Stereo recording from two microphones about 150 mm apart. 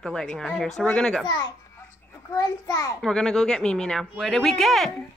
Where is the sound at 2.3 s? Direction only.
25° left (ahead or behind).